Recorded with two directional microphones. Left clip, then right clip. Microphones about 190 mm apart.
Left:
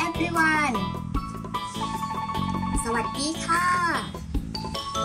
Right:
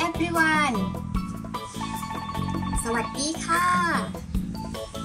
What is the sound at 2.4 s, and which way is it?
Music, centre (ahead or behind).